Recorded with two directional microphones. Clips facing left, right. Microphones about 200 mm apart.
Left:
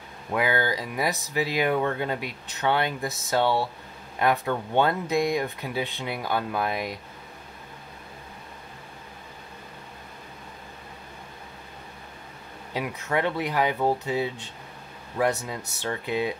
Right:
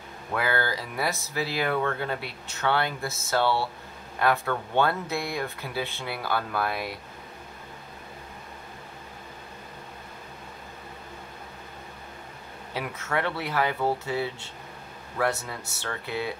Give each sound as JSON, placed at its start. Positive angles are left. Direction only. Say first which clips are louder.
{"t": 0.3, "sound": "speech", "louder": "left 3 dB", "side_deg": 15}
{"t": 12.7, "sound": "speech", "louder": "left 3 dB", "side_deg": 15}